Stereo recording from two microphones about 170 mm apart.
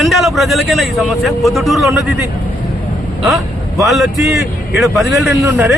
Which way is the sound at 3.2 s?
Centre (ahead or behind).